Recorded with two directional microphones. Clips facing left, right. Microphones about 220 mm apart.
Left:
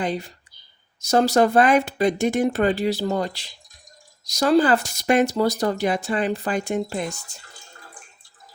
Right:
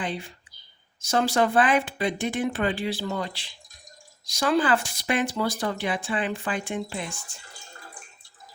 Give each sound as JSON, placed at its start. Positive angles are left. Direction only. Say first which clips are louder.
{"t": 0.0, "sound": "speech", "louder": "left 6 dB", "side_deg": 40}